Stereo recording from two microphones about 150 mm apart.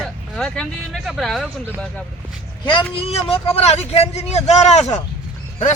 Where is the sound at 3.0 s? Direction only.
40° left (ahead or behind).